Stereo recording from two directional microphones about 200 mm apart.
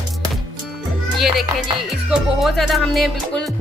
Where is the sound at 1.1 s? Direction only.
Centre (ahead or behind).